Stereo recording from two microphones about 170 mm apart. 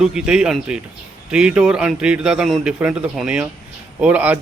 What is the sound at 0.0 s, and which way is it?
A man's voice, 5° right (ahead or behind).